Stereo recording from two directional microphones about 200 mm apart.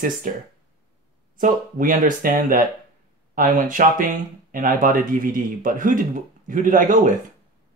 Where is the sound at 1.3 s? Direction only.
40° right (ahead or behind).